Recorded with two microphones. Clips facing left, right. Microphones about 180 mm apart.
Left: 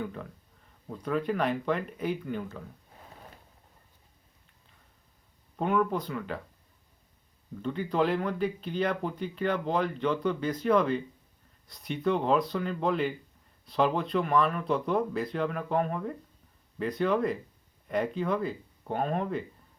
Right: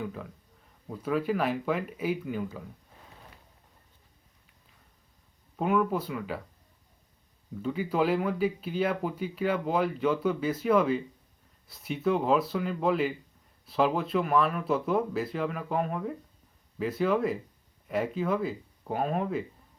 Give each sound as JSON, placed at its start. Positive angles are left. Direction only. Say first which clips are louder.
{"t": 0.0, "sound": "speech", "louder": "even", "side_deg": -5}
{"t": 5.5, "sound": "speech", "louder": "right 1 dB", "side_deg": -5}
{"t": 7.6, "sound": "speech", "louder": "even", "side_deg": -5}